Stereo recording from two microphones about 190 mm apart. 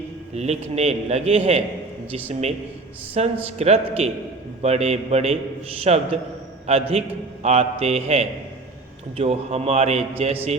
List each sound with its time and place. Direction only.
0.3 s a man's voice: 35° right (ahead or behind)
3.2 s a man's voice: 35° right (ahead or behind)